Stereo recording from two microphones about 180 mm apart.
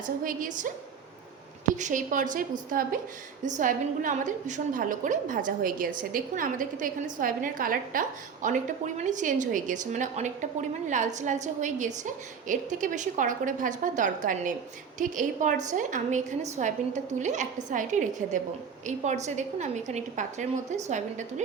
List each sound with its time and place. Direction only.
0.0 s a woman's voice: 45° right (ahead or behind)
1.7 s a woman's voice: 45° right (ahead or behind)